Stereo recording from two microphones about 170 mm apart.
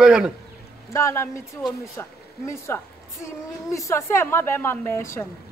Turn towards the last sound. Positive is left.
turn(degrees=15)  # may be behind; listen again after turning